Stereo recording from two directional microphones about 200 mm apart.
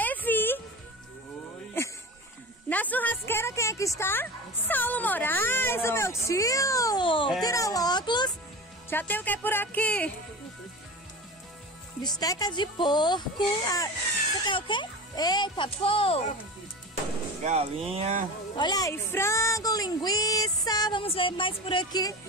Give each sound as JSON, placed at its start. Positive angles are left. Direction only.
{"t": 0.0, "sound": "music", "side_deg": 10}
{"t": 1.8, "sound": "snake", "side_deg": 10}
{"t": 2.7, "sound": "speech", "side_deg": 10}
{"t": 8.9, "sound": "speech", "side_deg": 10}
{"t": 12.0, "sound": "speech", "side_deg": 20}
{"t": 17.4, "sound": "speech", "side_deg": -30}
{"t": 18.6, "sound": "speech", "side_deg": 20}